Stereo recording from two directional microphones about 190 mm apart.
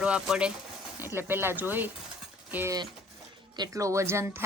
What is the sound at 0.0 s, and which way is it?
Speech, 5° right (ahead or behind).